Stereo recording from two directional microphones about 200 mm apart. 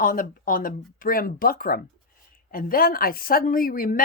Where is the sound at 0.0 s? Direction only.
45° left (ahead or behind).